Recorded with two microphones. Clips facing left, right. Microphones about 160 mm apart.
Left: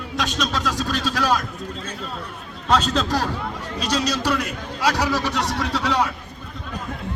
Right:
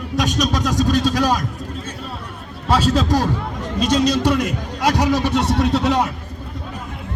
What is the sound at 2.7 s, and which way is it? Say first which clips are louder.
A man's voice: right 3 dB; 10° right (ahead or behind).